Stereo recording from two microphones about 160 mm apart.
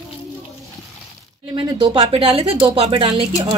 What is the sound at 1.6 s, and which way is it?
Speech, 30° right (ahead or behind).